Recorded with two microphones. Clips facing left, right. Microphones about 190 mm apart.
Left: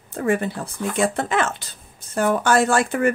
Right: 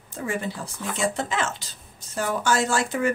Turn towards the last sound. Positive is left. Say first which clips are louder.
# left 5 dB
turn(degrees=55)  # may be behind; listen again after turning